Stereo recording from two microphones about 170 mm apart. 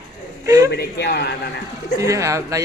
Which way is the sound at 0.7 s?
85° left.